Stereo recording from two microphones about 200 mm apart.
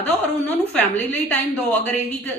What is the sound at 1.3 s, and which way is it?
A man's voice, 5° left (ahead or behind).